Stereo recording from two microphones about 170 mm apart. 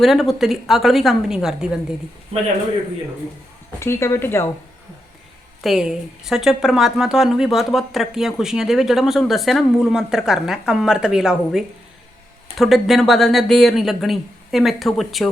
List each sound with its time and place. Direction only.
0.0 s a woman's voice: centre (ahead or behind)
3.8 s speech: 15° left (ahead or behind)
5.6 s a woman's voice: 5° right (ahead or behind)